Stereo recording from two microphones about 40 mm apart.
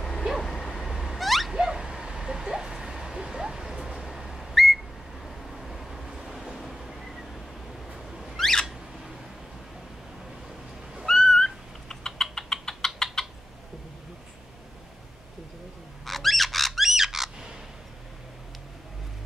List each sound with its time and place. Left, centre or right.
0.4 s vehicle: centre
0.7 s vehicle: centre
1.5 s a sound: centre
3.8 s whistle: centre
5.2 s vehicle: centre
7.9 s a sound: centre
8.4 s a sound: centre
11.1 s owl: centre
16.1 s squawk: centre